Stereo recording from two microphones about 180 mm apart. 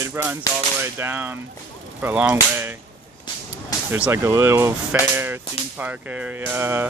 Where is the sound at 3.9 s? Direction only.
15° right (ahead or behind).